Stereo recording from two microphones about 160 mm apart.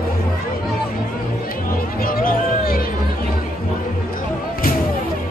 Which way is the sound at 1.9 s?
65° left (ahead or behind).